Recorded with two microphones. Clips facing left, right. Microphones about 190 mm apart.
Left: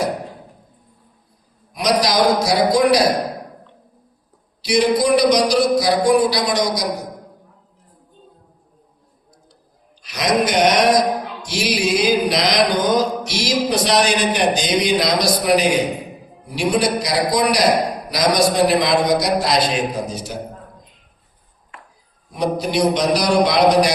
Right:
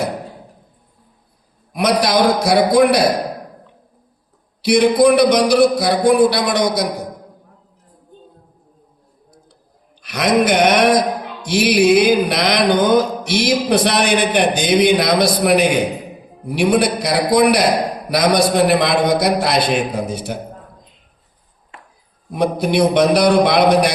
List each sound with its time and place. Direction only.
1.7 s music: 60° right (ahead or behind)
4.6 s music: 60° right (ahead or behind)
10.0 s music: 60° right (ahead or behind)
22.3 s music: 60° right (ahead or behind)